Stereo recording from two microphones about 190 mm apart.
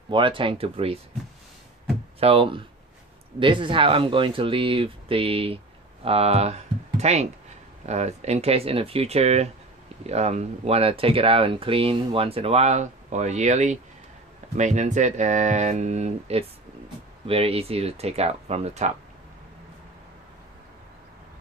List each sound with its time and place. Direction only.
0.1 s speech: 25° right (ahead or behind)
2.1 s speech: 30° right (ahead or behind)